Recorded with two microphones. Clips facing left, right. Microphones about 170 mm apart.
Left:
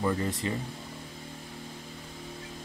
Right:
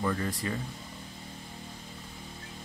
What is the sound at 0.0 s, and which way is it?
Speech, 20° left (ahead or behind).